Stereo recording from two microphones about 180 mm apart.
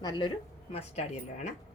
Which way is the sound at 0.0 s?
25° left (ahead or behind).